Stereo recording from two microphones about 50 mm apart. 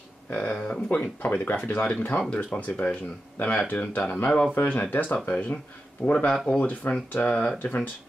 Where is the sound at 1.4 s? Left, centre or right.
Left.